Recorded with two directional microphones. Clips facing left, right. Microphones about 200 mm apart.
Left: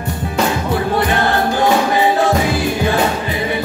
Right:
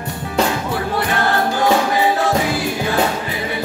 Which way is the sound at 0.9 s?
25° left (ahead or behind).